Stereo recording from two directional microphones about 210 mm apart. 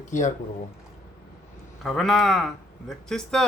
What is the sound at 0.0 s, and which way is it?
Speech, 35° left (ahead or behind).